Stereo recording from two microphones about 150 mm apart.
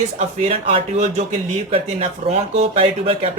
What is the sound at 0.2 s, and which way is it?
A man's voice, 45° right (ahead or behind).